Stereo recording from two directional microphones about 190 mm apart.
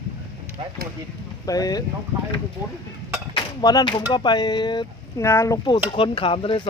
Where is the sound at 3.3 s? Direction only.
20° left (ahead or behind).